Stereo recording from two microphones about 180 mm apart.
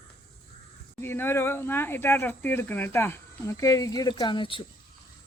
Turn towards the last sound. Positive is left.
turn(degrees=30)  # may be behind; listen again after turning